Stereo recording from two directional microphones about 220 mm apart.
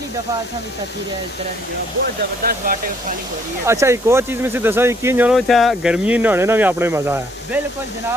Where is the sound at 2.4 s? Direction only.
40° right (ahead or behind).